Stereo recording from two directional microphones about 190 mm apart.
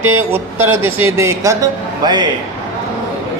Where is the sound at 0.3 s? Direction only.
10° right (ahead or behind).